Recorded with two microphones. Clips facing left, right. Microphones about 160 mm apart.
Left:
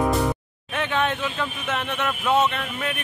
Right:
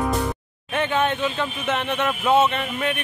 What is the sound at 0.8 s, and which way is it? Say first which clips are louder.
Speech: right 3 dB; centre (ahead or behind).